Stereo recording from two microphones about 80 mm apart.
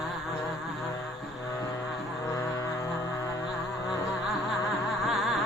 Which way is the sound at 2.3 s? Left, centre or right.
Left.